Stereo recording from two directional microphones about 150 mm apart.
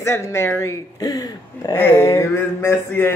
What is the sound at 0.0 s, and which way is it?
A man's voice, 15° left (ahead or behind).